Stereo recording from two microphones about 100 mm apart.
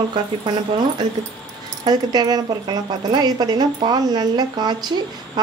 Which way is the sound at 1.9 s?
40° right (ahead or behind).